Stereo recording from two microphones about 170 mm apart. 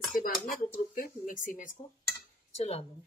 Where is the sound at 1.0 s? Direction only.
55° left (ahead or behind).